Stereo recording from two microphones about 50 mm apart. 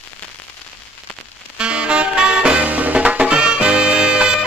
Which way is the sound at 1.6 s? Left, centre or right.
Right.